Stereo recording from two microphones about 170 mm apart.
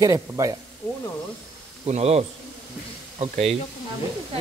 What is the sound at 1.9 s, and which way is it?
Speech, 40° right (ahead or behind).